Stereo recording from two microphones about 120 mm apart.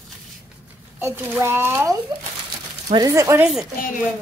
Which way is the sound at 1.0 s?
20° right (ahead or behind).